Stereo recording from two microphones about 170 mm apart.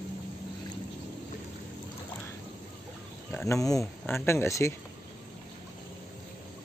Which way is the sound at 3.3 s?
15° left (ahead or behind).